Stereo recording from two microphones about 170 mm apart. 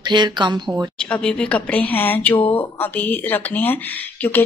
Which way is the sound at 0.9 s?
5° left (ahead or behind).